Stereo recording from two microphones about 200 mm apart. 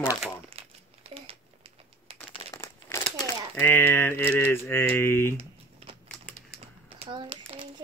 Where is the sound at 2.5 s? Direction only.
15° left (ahead or behind).